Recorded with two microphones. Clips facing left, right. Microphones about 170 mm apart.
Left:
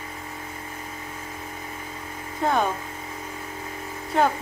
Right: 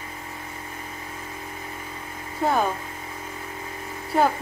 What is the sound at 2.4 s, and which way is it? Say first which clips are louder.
Speech: right 1 dB; 5° right (ahead or behind).